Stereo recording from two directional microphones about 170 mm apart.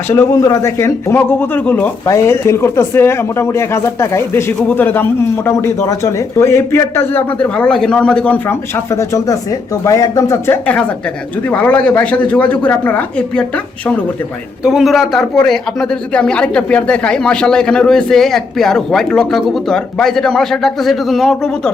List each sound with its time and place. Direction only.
0.1 s a man's voice: 15° left (ahead or behind)
14.6 s a man's voice: 5° right (ahead or behind)